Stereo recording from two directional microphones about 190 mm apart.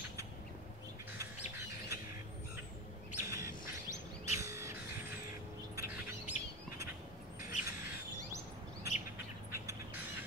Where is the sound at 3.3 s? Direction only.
15° right (ahead or behind).